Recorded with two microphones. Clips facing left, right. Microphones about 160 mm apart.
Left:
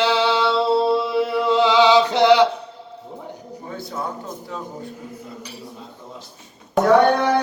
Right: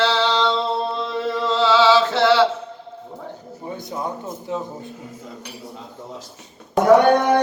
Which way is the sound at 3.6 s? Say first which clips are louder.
Right 1 dB; 20° right (ahead or behind).